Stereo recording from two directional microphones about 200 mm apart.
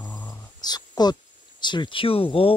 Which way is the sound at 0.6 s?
20° left (ahead or behind).